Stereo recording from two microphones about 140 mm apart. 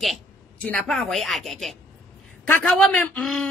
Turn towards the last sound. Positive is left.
turn(degrees=10)  # may be behind; listen again after turning